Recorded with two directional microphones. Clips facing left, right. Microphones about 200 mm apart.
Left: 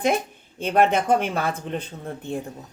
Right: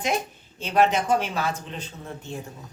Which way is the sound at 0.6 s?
55° left (ahead or behind).